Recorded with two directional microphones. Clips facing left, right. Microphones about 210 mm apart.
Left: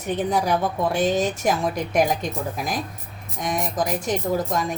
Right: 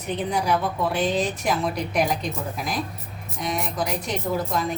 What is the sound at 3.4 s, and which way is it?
A woman's voice, 50° left (ahead or behind).